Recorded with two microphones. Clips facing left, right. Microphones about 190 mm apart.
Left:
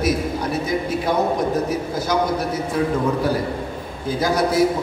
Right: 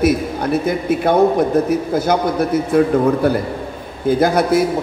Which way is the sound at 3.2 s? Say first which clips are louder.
Right 4 dB; 60° right (ahead or behind).